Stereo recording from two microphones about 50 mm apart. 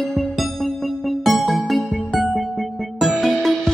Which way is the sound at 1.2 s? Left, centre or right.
Centre.